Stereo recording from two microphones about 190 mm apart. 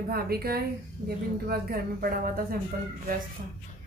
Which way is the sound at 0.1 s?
55° right (ahead or behind).